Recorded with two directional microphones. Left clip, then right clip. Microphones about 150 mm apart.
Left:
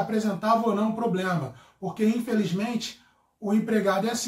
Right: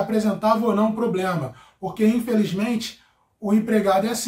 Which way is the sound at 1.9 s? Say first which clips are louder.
Right 5 dB; 20° right (ahead or behind).